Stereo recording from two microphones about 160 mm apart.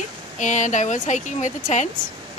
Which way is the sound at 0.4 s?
50° left (ahead or behind).